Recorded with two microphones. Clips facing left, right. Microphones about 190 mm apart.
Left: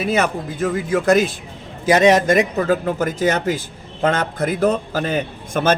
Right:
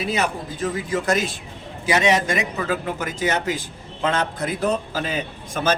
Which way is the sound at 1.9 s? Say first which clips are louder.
Left 6 dB; 45° left (ahead or behind).